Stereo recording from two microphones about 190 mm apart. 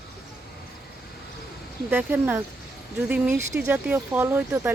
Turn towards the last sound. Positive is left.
turn(degrees=-10)  # may be behind; listen again after turning